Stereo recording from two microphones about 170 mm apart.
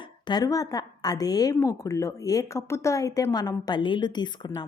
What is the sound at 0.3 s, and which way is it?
A woman's voice, 20° left (ahead or behind).